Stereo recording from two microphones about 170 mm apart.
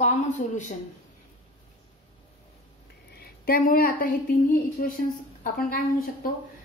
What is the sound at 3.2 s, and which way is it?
A woman's voice, 60° left (ahead or behind).